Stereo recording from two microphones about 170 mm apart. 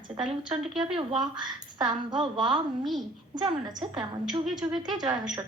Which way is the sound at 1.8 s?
30° right (ahead or behind).